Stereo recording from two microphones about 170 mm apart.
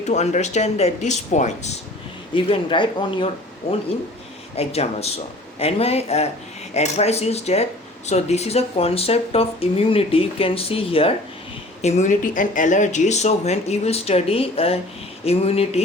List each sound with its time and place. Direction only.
0.0 s speech: 40° left (ahead or behind)
2.3 s speech: 30° left (ahead or behind)
4.5 s speech: 35° left (ahead or behind)